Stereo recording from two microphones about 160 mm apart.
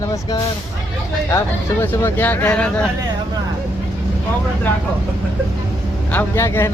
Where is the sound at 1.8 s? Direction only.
10° left (ahead or behind).